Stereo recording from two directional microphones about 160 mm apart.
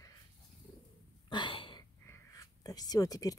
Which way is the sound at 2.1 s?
20° left (ahead or behind).